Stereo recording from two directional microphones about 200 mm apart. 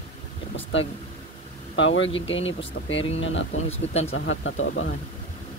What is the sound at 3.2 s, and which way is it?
Speech, 70° left (ahead or behind).